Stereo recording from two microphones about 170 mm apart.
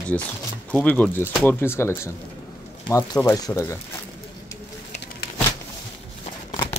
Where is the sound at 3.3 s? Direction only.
20° left (ahead or behind).